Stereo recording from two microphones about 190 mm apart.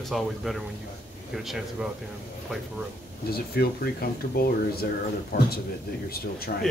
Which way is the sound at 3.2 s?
55° left (ahead or behind).